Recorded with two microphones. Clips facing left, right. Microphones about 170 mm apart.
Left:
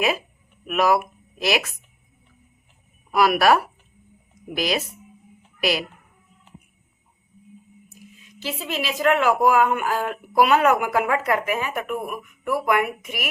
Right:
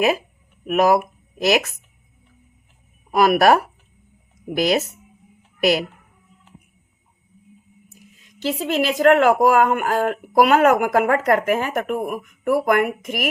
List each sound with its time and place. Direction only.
0.7 s speech: 40° right (ahead or behind)
3.1 s speech: 45° right (ahead or behind)
8.5 s speech: 50° right (ahead or behind)